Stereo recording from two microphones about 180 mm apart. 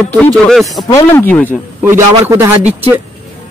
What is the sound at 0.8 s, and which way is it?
Speech, 15° left (ahead or behind).